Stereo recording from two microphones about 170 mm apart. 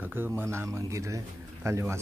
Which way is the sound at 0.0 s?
10° right (ahead or behind).